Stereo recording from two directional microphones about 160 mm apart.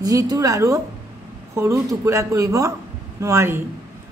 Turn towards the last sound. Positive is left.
turn(degrees=-15)  # may be behind; listen again after turning